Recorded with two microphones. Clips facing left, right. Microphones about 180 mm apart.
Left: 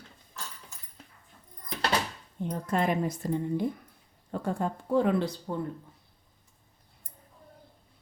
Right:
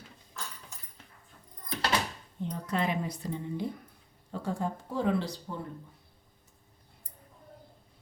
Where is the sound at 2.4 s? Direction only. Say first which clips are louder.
Left 3 dB; 50° left (ahead or behind).